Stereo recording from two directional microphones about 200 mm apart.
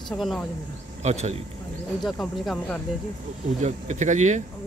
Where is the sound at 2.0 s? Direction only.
Centre (ahead or behind).